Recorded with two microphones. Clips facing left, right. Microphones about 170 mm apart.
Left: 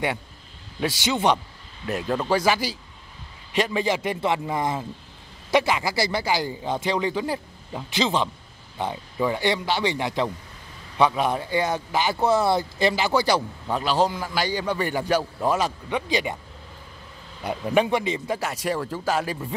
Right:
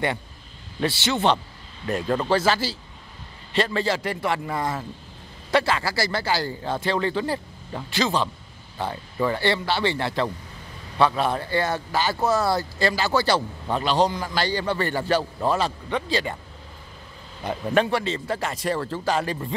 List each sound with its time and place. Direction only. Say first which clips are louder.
0.7 s a man's voice: right 1 dB; 10° left (ahead or behind)
8.0 s a man's voice: even; 20° left (ahead or behind)
13.7 s a man's voice: right 1 dB; 5° left (ahead or behind)
17.4 s a man's voice: even; 10° left (ahead or behind)